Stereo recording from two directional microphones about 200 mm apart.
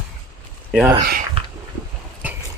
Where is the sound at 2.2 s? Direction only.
10° right (ahead or behind).